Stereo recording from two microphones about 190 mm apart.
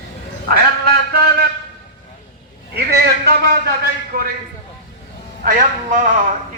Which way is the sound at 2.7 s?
55° right (ahead or behind).